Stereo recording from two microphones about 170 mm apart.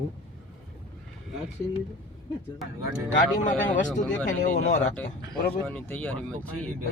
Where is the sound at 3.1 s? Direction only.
50° left (ahead or behind).